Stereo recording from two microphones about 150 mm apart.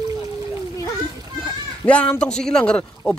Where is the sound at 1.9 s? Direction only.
10° left (ahead or behind).